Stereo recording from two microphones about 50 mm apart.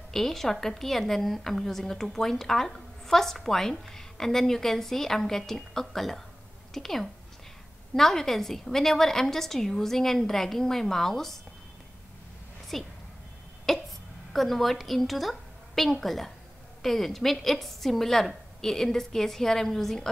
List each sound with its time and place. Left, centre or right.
0.1 s a woman's voice: centre
12.7 s a woman's voice: centre
13.7 s a sound: centre
16.8 s a woman's voice: centre